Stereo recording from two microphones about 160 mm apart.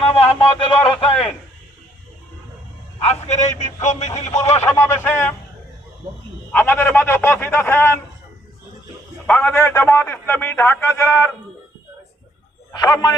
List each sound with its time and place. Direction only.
0.0 s a man's voice: 40° left (ahead or behind)
3.0 s a man's voice: 45° left (ahead or behind)
4.6 s a man's voice: 15° left (ahead or behind)
6.5 s a man's voice: 10° left (ahead or behind)
9.2 s a man's voice: 5° left (ahead or behind)
12.8 s a man's voice: 25° left (ahead or behind)